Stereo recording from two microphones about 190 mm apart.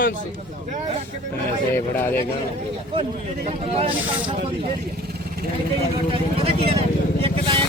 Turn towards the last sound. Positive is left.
turn(degrees=-30)  # may be behind; listen again after turning